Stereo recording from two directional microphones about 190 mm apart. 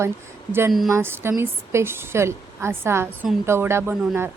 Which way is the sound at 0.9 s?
15° right (ahead or behind).